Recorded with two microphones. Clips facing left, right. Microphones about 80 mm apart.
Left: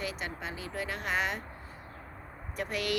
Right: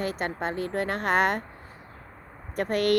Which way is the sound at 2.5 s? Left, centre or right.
Right.